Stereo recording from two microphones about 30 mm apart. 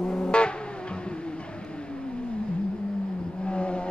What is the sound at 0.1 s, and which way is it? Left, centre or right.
Music, left.